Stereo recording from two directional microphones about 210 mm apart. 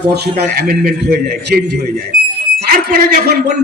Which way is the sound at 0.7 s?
45° right (ahead or behind).